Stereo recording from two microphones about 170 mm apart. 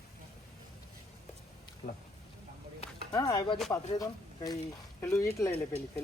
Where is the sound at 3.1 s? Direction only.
25° left (ahead or behind).